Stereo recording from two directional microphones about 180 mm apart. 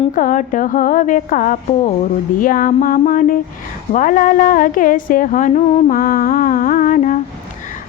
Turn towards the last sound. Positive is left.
turn(degrees=45)  # may be behind; listen again after turning